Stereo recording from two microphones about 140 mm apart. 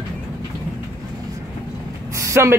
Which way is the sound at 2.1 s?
20° right (ahead or behind).